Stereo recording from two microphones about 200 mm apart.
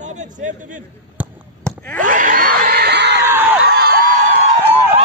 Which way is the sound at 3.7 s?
50° right (ahead or behind).